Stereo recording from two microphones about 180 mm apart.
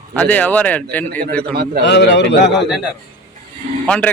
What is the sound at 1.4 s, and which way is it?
Speech, 60° right (ahead or behind).